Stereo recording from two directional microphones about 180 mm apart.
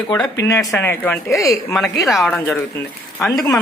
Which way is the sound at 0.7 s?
10° left (ahead or behind).